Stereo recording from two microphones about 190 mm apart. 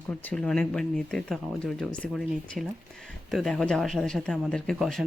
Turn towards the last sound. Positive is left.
turn(degrees=0)  # may be behind; listen again after turning